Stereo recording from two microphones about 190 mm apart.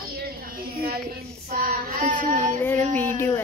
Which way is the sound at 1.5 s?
50° right (ahead or behind).